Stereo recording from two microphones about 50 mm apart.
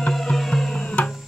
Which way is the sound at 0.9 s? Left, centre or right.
Left.